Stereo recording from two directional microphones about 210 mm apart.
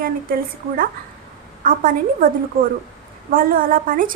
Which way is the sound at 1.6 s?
40° right (ahead or behind).